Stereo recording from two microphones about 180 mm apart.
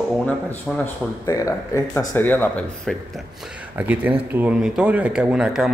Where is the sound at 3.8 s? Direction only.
10° right (ahead or behind).